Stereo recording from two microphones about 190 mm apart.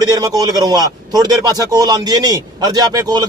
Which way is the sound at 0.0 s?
20° right (ahead or behind).